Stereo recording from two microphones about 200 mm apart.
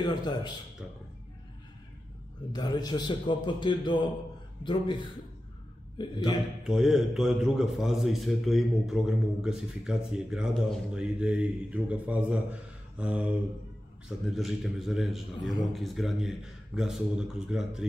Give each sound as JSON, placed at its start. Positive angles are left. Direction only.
{"t": 0.0, "sound": "a man's voice", "side_deg": 20}
{"t": 2.5, "sound": "a man's voice", "side_deg": 20}
{"t": 5.9, "sound": "a man's voice", "side_deg": 20}
{"t": 6.6, "sound": "a man's voice", "side_deg": 0}